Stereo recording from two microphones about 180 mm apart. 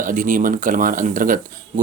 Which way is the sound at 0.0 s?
45° right (ahead or behind).